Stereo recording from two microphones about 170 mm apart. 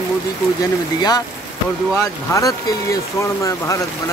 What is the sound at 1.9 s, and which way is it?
Speech, 20° left (ahead or behind).